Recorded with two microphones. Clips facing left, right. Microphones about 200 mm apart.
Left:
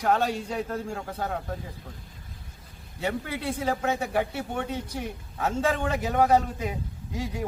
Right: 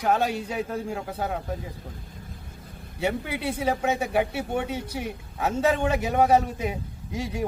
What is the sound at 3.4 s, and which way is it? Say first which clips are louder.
A man's voice: right 2 dB; 10° right (ahead or behind).